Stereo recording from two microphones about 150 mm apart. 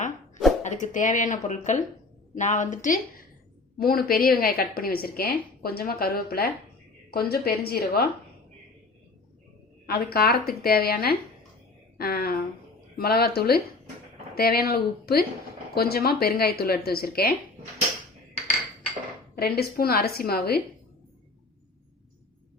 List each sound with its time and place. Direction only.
0.6 s speech: 55° left (ahead or behind)
3.8 s a woman's voice: 85° left
9.8 s a woman's voice: 85° left
19.4 s a woman's voice: 90° left